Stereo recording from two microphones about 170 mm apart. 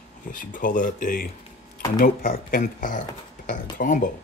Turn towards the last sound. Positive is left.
turn(degrees=50)  # may be behind; listen again after turning